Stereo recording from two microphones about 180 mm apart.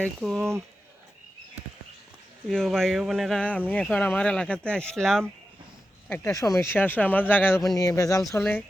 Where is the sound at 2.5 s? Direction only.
Centre (ahead or behind).